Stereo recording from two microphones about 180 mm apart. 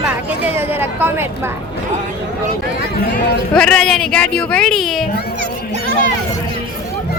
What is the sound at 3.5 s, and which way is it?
Speech, 5° left (ahead or behind).